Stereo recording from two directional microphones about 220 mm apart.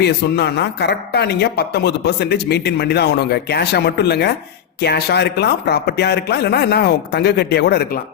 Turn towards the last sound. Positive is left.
turn(degrees=45)  # may be behind; listen again after turning